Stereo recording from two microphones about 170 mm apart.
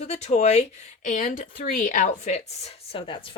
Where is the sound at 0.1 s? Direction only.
40° left (ahead or behind).